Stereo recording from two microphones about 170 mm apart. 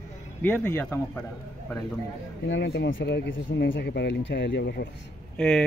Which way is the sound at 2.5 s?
90° left.